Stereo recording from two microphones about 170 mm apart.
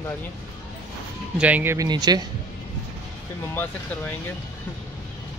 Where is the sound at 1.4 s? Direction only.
10° right (ahead or behind).